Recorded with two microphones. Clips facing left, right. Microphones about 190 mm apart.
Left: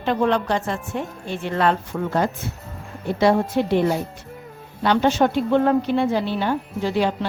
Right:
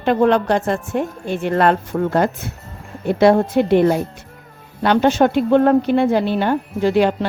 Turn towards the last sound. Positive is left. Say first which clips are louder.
# right 6 dB
turn(degrees=-60)  # may be behind; listen again after turning